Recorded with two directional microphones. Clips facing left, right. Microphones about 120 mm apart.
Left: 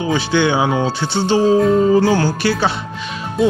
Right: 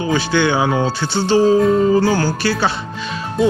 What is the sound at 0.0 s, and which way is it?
Speech, 20° left (ahead or behind).